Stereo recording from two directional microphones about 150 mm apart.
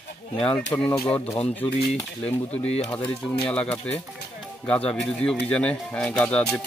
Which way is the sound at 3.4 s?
10° left (ahead or behind).